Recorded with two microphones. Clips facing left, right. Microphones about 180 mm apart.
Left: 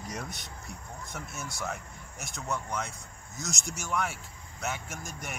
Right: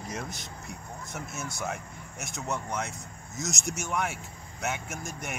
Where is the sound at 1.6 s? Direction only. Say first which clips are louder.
Right 1 dB; 5° right (ahead or behind).